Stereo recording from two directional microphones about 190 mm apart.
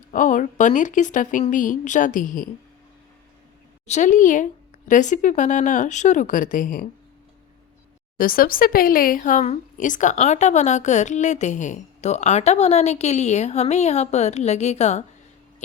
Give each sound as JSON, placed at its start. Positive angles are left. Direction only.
{"t": 0.1, "sound": "a woman's voice", "side_deg": 45}
{"t": 3.8, "sound": "speech", "side_deg": 40}
{"t": 8.2, "sound": "speech", "side_deg": 50}